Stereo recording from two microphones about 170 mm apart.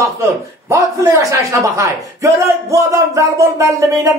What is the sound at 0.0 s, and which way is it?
A man's voice, 20° right (ahead or behind).